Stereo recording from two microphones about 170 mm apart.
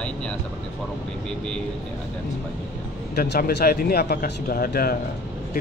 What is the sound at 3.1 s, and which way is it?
Speech, 65° left (ahead or behind).